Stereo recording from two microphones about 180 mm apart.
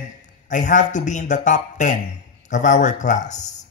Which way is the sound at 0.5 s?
45° left (ahead or behind).